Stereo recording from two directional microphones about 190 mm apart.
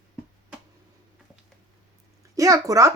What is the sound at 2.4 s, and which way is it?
Speech, 15° right (ahead or behind).